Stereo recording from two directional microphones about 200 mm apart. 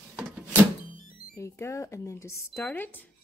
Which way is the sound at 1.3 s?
15° left (ahead or behind).